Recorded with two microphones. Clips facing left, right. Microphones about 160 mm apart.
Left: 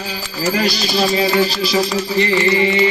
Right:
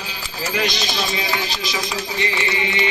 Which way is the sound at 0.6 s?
35° left (ahead or behind).